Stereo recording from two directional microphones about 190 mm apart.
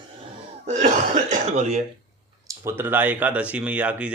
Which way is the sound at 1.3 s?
35° right (ahead or behind).